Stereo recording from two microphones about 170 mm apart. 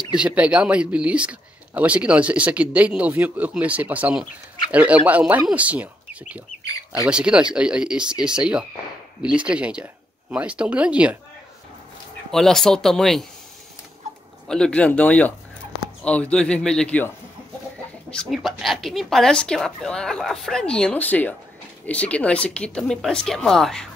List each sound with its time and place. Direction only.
0.1 s speech: 5° right (ahead or behind)
6.7 s bird: 20° left (ahead or behind)
7.1 s speech: 5° right (ahead or behind)
12.3 s speech: centre (ahead or behind)
14.5 s speech: 5° left (ahead or behind)
18.1 s speech: centre (ahead or behind)